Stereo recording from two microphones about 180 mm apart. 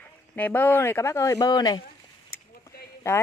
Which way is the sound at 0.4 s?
10° left (ahead or behind).